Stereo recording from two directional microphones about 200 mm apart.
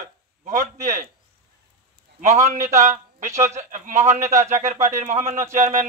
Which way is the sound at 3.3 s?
15° right (ahead or behind).